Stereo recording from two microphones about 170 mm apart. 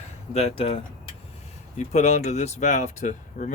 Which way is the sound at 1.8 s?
45° left (ahead or behind).